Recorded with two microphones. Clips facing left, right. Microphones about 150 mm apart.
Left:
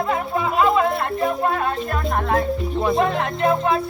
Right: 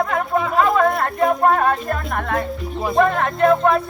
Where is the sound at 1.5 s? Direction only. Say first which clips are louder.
Right 4 dB; 55° right (ahead or behind).